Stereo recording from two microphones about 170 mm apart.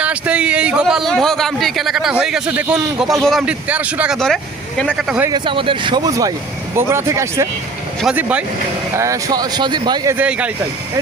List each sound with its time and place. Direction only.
0.0 s a man's voice: 5° right (ahead or behind)
5.3 s speech: 30° right (ahead or behind); by 8.4 s 10° right (ahead or behind)
9.0 s speech: 20° right (ahead or behind)
10.2 s speech: 10° right (ahead or behind)